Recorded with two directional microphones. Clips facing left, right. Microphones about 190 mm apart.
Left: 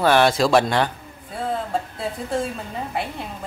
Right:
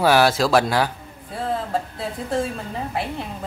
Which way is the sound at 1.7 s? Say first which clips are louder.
Even; centre (ahead or behind).